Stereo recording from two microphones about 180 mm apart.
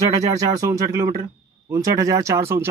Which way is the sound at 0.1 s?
20° right (ahead or behind).